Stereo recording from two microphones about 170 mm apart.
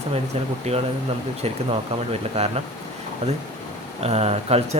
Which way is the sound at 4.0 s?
40° right (ahead or behind).